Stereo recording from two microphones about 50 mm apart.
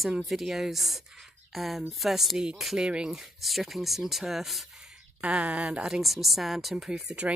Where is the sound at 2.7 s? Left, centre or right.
Centre.